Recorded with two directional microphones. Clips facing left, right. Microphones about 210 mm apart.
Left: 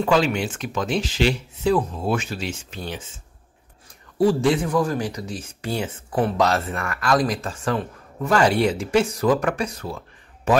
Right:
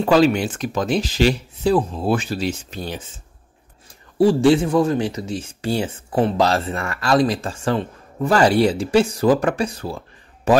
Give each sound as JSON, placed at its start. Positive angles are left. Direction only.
{"t": 0.0, "sound": "speech", "side_deg": -40}
{"t": 4.2, "sound": "speech", "side_deg": -30}